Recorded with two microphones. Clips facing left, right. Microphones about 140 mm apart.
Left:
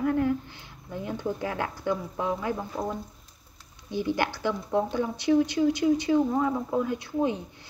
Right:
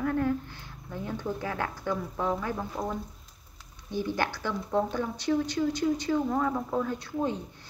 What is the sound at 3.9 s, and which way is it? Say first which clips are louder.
Speech: left 2 dB; 15° left (ahead or behind).